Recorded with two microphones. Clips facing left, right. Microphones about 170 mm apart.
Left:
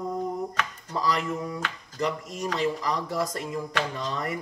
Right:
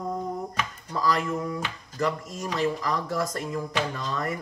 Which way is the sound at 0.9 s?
20° left (ahead or behind).